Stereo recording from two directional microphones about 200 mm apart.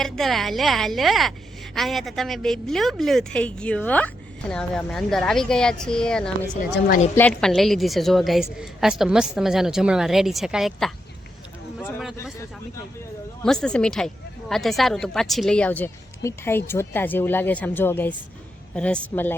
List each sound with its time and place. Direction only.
0.0 s a woman's voice: centre (ahead or behind)
6.7 s a woman's voice: 55° left (ahead or behind)
7.2 s a woman's voice: 5° left (ahead or behind)
11.8 s a sound: 10° left (ahead or behind)
12.1 s speech: 15° left (ahead or behind)
13.4 s a woman's voice: 5° left (ahead or behind)